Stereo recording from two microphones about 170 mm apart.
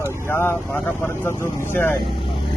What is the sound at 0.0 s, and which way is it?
Speech, 15° left (ahead or behind).